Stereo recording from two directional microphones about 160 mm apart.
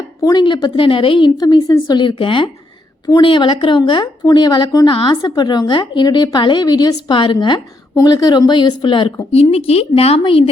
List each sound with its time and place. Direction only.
0.2 s a woman's voice: 25° left (ahead or behind)